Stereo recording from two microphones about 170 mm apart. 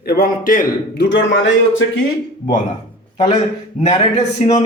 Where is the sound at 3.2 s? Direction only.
45° left (ahead or behind).